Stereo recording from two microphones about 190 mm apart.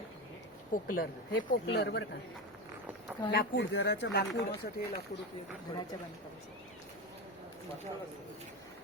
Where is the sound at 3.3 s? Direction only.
65° left (ahead or behind).